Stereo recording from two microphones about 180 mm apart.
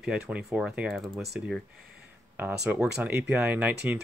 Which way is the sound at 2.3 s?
10° right (ahead or behind).